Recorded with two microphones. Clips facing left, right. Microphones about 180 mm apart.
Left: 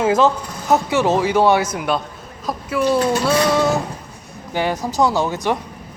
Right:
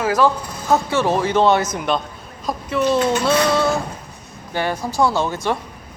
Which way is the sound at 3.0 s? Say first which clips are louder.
Even; 35° left (ahead or behind).